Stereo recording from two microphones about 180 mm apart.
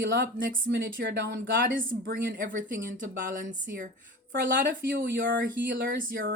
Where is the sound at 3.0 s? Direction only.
45° right (ahead or behind).